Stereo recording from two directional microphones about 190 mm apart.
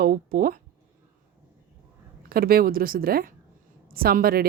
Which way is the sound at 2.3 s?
50° right (ahead or behind).